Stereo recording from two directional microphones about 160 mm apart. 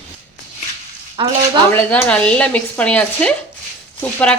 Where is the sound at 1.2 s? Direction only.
30° right (ahead or behind).